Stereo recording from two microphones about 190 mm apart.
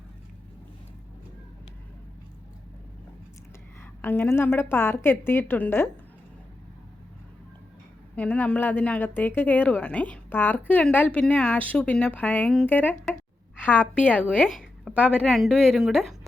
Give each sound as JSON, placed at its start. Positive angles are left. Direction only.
{"t": 4.0, "sound": "a woman's voice", "side_deg": 10}
{"t": 8.1, "sound": "a woman's voice", "side_deg": 10}